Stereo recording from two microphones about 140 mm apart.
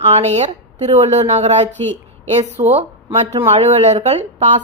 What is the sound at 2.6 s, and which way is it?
A woman's voice, 50° right (ahead or behind).